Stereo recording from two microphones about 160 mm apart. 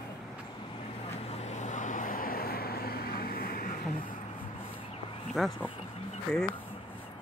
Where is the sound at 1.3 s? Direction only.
45° left (ahead or behind); by 4.0 s 60° left (ahead or behind).